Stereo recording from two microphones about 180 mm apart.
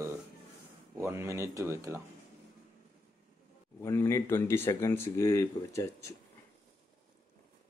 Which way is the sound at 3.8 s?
15° left (ahead or behind).